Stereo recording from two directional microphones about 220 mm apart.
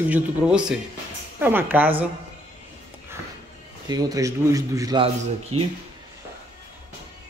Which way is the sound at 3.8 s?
15° right (ahead or behind).